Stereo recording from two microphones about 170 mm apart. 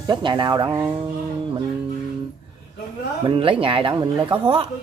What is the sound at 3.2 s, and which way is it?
Speech, 30° right (ahead or behind).